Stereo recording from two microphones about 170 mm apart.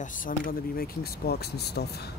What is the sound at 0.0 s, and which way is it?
Speech, 55° left (ahead or behind).